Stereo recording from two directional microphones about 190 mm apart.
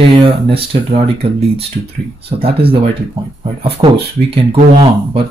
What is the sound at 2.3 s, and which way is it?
Speech, 30° right (ahead or behind).